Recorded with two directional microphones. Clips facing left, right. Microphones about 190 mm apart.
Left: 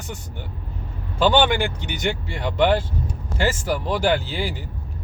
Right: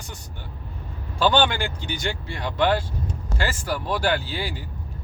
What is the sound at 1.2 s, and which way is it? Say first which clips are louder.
Speech: left 3 dB; 15° left (ahead or behind).